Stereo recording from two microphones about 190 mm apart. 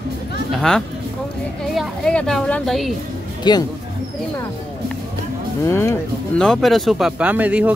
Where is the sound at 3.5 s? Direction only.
20° left (ahead or behind).